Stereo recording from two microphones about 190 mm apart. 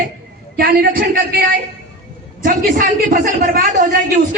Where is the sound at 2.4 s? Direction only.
45° right (ahead or behind).